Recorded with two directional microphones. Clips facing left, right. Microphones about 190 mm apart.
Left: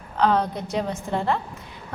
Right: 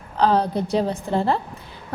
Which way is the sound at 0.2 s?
35° right (ahead or behind).